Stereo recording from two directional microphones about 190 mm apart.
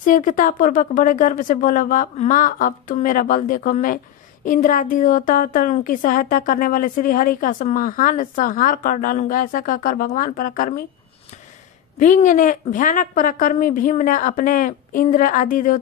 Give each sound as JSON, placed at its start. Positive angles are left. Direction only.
{"t": 0.0, "sound": "a woman's voice", "side_deg": 45}
{"t": 12.0, "sound": "a woman's voice", "side_deg": 40}